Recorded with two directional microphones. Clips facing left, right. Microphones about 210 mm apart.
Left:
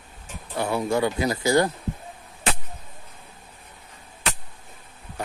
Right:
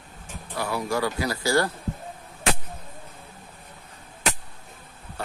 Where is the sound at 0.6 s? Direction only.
25° left (ahead or behind).